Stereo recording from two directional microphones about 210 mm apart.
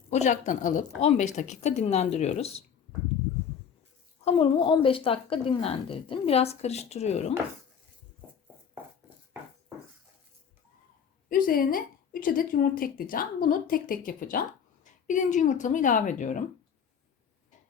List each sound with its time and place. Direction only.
0.1 s a woman's voice: 35° left (ahead or behind)
4.2 s a woman's voice: 30° left (ahead or behind)
11.3 s a woman's voice: 40° left (ahead or behind)